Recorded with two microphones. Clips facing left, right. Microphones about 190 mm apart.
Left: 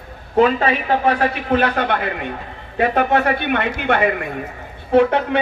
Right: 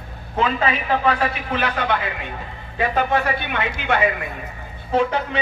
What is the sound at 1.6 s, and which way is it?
A man's voice, 55° left (ahead or behind).